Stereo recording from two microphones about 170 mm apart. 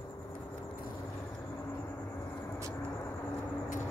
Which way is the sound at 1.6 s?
15° left (ahead or behind).